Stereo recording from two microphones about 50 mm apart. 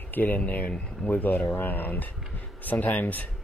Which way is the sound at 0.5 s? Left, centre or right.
Left.